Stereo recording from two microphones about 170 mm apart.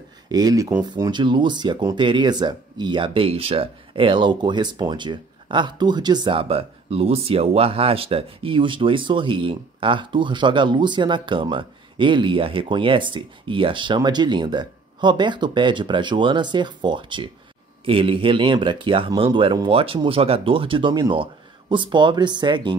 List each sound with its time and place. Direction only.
0.3 s speech: 20° right (ahead or behind)